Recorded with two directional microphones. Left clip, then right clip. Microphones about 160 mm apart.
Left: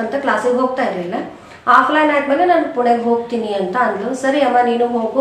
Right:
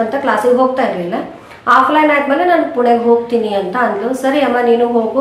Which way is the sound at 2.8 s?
30° right (ahead or behind).